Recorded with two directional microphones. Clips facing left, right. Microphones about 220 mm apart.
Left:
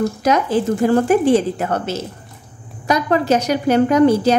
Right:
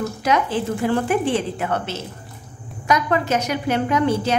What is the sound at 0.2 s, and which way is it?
A woman's voice, 40° left (ahead or behind).